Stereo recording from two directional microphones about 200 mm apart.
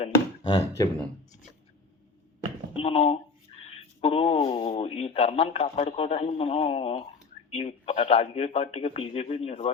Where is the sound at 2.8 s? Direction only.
30° left (ahead or behind).